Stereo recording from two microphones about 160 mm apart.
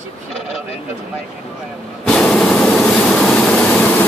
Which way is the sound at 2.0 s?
5° left (ahead or behind).